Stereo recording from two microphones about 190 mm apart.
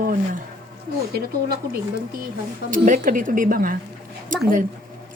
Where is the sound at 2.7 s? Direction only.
45° right (ahead or behind).